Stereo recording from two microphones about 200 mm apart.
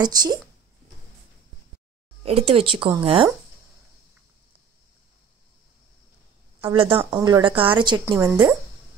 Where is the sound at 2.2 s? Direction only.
30° right (ahead or behind).